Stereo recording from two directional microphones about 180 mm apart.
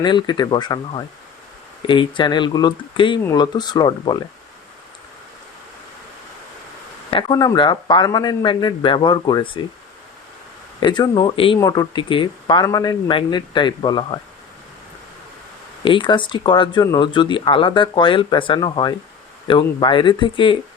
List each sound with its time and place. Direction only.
0.0 s speech: 25° left (ahead or behind)
7.1 s speech: 25° left (ahead or behind)
10.8 s speech: 25° left (ahead or behind)
15.8 s speech: 25° left (ahead or behind)